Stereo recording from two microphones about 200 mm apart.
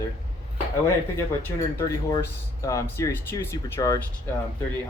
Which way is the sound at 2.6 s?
15° left (ahead or behind).